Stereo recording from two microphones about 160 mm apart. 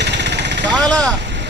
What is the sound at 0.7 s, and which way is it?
Speech, 5° left (ahead or behind).